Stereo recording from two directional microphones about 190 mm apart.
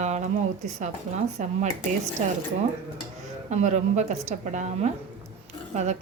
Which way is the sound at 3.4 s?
40° right (ahead or behind).